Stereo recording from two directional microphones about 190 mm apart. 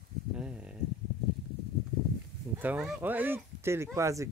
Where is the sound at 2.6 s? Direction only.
10° right (ahead or behind).